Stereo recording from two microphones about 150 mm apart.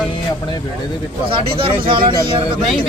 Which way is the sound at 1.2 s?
35° right (ahead or behind).